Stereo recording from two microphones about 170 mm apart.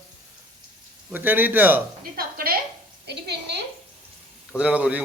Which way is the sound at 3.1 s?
75° right (ahead or behind).